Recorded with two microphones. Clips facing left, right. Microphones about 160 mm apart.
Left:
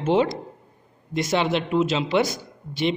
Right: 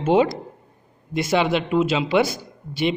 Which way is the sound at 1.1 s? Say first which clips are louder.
Right 2 dB; 10° right (ahead or behind).